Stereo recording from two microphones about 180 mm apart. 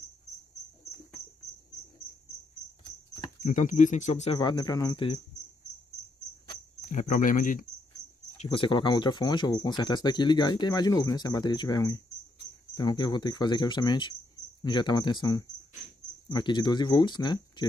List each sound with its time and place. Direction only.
3.4 s speech: 45° left (ahead or behind)
4.4 s speech: 25° left (ahead or behind)
6.9 s speech: 45° left (ahead or behind)
8.4 s speech: 30° left (ahead or behind)